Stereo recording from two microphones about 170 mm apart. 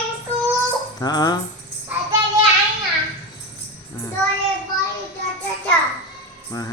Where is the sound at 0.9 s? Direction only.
25° left (ahead or behind).